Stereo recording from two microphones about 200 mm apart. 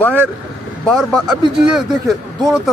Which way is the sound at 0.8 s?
Centre (ahead or behind).